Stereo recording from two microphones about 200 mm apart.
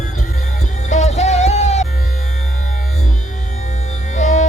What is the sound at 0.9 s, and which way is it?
Music, 35° left (ahead or behind).